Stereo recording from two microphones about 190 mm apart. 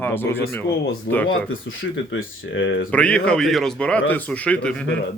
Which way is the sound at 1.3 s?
90° left.